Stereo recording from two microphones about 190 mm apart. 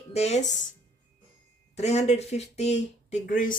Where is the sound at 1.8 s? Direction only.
35° left (ahead or behind).